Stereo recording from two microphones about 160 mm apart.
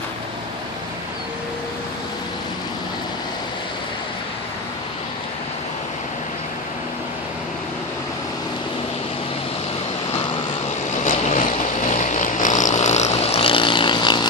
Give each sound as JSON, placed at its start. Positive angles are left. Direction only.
{"t": 11.0, "sound": "boat", "side_deg": 50}
{"t": 11.9, "sound": "vehicle", "side_deg": 50}